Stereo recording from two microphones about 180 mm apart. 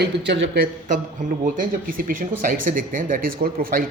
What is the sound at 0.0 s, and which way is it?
Speech, 80° right.